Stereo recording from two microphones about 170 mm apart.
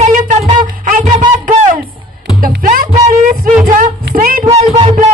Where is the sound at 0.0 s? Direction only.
45° right (ahead or behind).